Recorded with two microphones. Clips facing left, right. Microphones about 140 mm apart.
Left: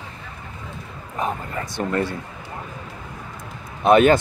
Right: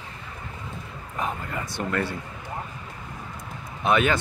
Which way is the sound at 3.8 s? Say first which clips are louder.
Left 8 dB; 40° left (ahead or behind).